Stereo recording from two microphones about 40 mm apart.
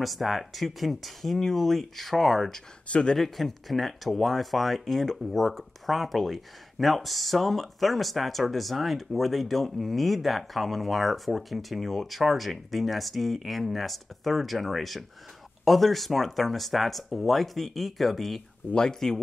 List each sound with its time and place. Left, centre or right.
0.0 s speech: centre
2.9 s speech: left
3.2 s speech: centre
18.8 s speech: centre